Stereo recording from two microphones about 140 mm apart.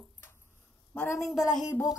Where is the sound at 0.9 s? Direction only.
15° left (ahead or behind).